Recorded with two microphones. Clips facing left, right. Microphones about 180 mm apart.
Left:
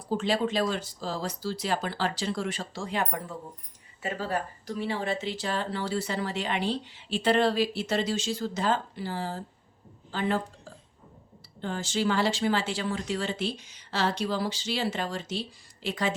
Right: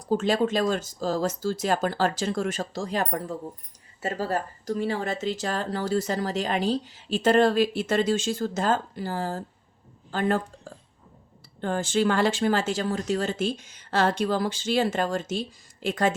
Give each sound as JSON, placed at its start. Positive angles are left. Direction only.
{"t": 0.1, "sound": "a woman's voice", "side_deg": -45}